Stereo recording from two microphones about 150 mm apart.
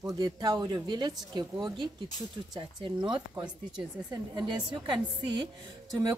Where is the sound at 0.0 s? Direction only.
30° right (ahead or behind).